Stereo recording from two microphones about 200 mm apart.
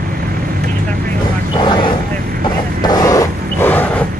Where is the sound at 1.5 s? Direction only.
25° left (ahead or behind).